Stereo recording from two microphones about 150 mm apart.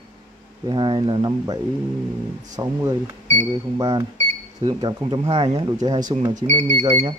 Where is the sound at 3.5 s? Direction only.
25° right (ahead or behind).